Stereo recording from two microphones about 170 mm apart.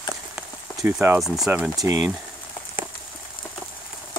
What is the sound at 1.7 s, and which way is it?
Speech, 20° right (ahead or behind).